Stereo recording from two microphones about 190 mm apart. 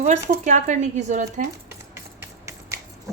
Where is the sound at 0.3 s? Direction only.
40° right (ahead or behind).